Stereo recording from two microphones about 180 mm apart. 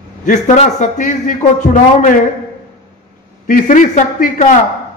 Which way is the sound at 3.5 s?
50° left (ahead or behind).